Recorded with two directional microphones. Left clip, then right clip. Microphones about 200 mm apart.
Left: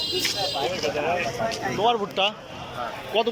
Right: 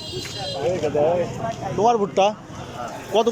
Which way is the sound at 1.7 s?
10° right (ahead or behind).